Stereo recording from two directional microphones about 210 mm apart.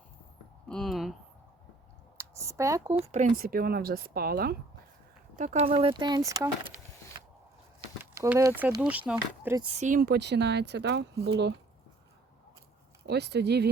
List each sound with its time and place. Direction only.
0.7 s a sound: centre (ahead or behind)
2.1 s a sound: 15° right (ahead or behind)
3.0 s speech: 35° right (ahead or behind)
5.4 s speech: 35° right (ahead or behind); by 6.7 s 15° right (ahead or behind)
8.1 s speech: 15° right (ahead or behind)
9.6 s speech: 30° right (ahead or behind); by 11.0 s 55° right (ahead or behind)
13.1 s speech: 50° right (ahead or behind)